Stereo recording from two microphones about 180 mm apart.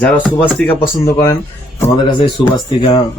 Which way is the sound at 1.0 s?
15° left (ahead or behind).